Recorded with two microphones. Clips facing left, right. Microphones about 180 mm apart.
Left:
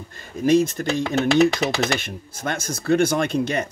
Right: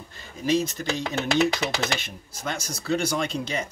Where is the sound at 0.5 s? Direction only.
50° left (ahead or behind).